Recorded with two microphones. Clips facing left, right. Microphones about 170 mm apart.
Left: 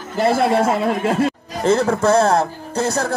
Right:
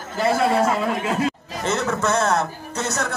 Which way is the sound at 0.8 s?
50° left (ahead or behind).